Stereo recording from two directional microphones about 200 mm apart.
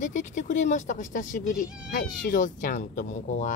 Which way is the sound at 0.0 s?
35° left (ahead or behind).